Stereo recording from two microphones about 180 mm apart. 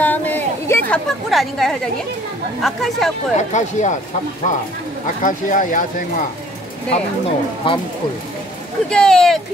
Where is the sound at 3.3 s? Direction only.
40° left (ahead or behind).